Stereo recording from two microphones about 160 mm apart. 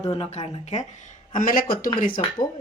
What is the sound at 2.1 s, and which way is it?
Speech, 30° left (ahead or behind).